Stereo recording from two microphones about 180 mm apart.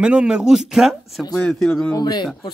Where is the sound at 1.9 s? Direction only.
25° left (ahead or behind).